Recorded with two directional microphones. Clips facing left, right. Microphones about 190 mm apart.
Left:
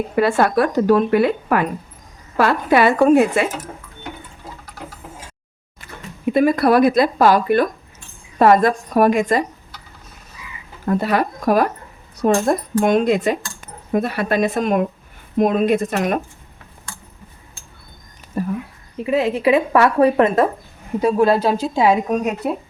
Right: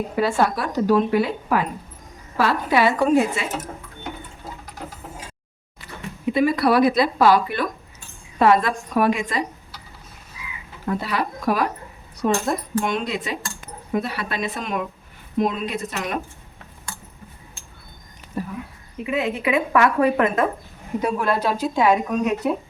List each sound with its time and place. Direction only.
0.2 s speech: 60° left (ahead or behind)
5.8 s speech: 50° left (ahead or behind)
10.8 s speech: 45° left (ahead or behind)
18.4 s a sound: 45° left (ahead or behind)
19.0 s a woman's voice: 35° left (ahead or behind)